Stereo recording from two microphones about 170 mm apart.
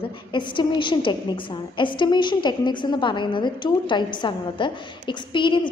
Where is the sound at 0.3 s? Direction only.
30° left (ahead or behind).